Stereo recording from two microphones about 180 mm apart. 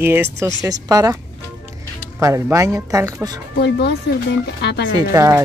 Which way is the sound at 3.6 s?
70° left (ahead or behind).